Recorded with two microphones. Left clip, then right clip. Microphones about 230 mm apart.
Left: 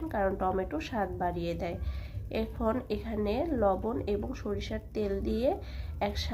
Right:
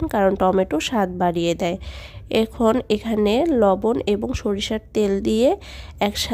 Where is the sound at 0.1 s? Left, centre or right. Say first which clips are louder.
Right 12 dB; right.